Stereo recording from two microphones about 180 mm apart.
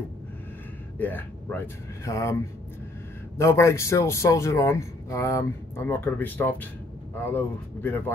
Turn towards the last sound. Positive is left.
turn(degrees=10)  # may be behind; listen again after turning